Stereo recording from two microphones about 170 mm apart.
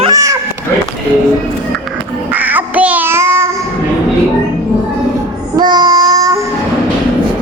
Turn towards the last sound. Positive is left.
turn(degrees=-20)  # may be behind; listen again after turning